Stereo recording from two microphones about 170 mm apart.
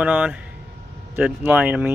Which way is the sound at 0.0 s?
10° right (ahead or behind).